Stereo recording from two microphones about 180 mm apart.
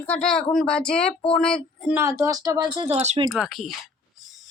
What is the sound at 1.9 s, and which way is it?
Speech, 15° right (ahead or behind).